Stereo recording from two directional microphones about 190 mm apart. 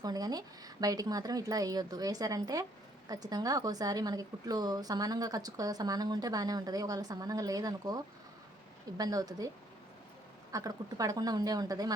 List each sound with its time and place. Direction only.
0.0 s a woman's voice: 20° right (ahead or behind)
10.5 s a woman's voice: 20° right (ahead or behind)